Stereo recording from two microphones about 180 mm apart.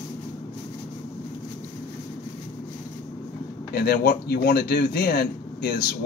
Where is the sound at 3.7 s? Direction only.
60° left (ahead or behind).